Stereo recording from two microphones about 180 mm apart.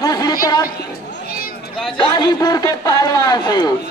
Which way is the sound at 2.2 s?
20° left (ahead or behind).